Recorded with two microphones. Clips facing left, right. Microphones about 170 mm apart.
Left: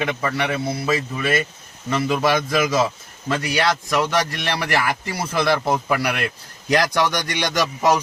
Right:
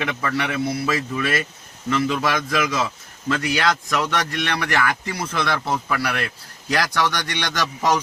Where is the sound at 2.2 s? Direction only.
30° left (ahead or behind).